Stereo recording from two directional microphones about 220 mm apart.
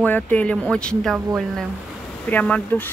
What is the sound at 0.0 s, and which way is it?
A woman's voice, 5° left (ahead or behind).